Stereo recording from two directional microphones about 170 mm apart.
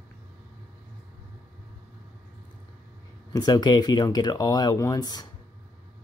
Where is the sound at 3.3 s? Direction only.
25° left (ahead or behind).